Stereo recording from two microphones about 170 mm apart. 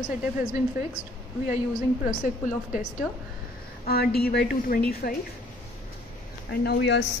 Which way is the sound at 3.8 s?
65° left (ahead or behind).